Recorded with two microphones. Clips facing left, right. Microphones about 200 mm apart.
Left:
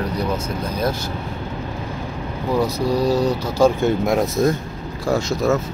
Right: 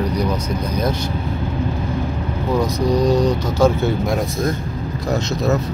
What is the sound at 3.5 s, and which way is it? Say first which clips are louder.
Speech: left 1 dB; 10° left (ahead or behind).